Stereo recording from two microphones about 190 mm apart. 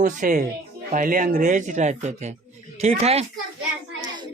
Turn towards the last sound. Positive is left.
turn(degrees=-25)  # may be behind; listen again after turning